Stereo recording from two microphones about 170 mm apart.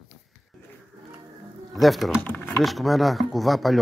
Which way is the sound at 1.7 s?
Centre (ahead or behind).